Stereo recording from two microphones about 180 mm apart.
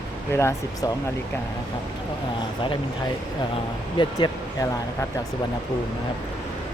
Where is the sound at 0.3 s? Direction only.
15° left (ahead or behind).